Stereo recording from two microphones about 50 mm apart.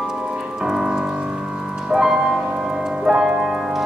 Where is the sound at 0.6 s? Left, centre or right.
Centre.